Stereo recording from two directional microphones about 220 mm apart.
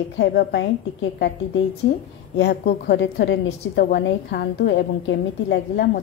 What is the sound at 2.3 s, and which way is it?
A woman's voice, 50° left (ahead or behind).